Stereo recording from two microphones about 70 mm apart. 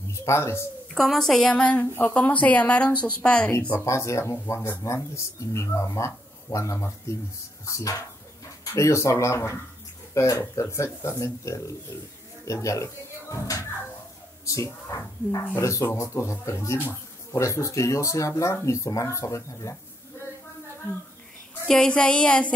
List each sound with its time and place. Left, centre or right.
0.1 s speech: left
0.9 s a woman's voice: centre; by 3.5 s left
3.8 s speech: left
21.6 s a sound: centre